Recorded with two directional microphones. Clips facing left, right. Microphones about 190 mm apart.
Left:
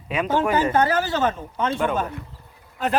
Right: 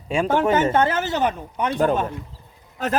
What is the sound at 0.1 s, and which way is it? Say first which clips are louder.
Speech: right 2 dB; 25° right (ahead or behind).